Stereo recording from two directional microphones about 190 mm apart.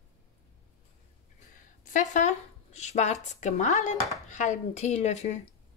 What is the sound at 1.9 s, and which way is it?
Speech, 40° left (ahead or behind).